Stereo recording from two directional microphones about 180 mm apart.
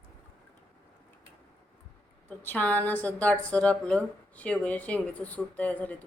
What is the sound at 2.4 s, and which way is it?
A woman's voice, 10° left (ahead or behind).